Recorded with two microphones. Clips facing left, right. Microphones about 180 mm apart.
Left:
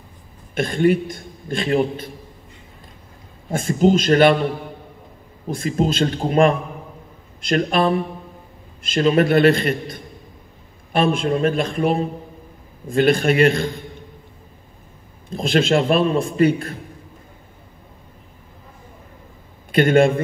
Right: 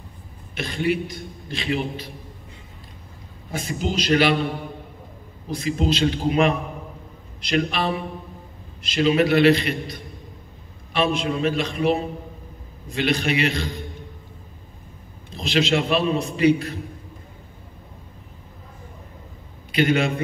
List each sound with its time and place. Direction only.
0.6 s a man's voice: 50° left (ahead or behind)
3.4 s a man's voice: 50° left (ahead or behind)
5.5 s a man's voice: 50° left (ahead or behind)
15.2 s a man's voice: 50° left (ahead or behind)
19.7 s a man's voice: 50° left (ahead or behind)